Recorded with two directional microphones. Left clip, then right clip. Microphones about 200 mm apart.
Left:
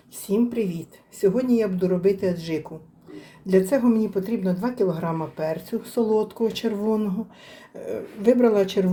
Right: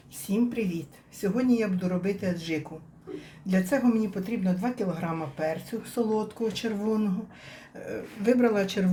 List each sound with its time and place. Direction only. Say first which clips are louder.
0.3 s speech: left 5 dB; 30° left (ahead or behind)